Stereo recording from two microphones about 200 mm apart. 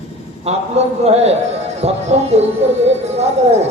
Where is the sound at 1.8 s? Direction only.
30° right (ahead or behind).